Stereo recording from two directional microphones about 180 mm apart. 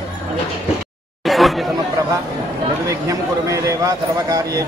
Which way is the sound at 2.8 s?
15° right (ahead or behind).